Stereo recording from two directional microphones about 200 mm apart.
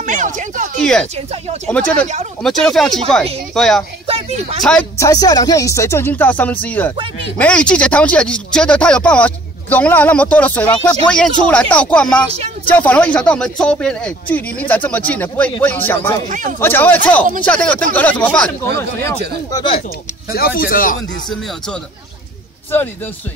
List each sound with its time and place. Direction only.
0.0 s a sound: 40° right (ahead or behind)
1.1 s speech: 30° right (ahead or behind)
2.4 s speech: centre (ahead or behind)
4.1 s speech: 30° right (ahead or behind)
4.6 s speech: 5° left (ahead or behind)
5.0 s speech: 20° left (ahead or behind)
16.3 s speech: 40° right (ahead or behind)
16.5 s speech: 10° left (ahead or behind)
20.3 s speech: 50° left (ahead or behind)